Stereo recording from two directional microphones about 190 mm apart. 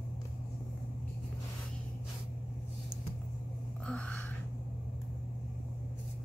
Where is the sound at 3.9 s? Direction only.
5° left (ahead or behind).